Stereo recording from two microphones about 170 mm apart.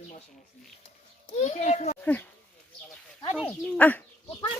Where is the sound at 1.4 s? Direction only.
40° left (ahead or behind).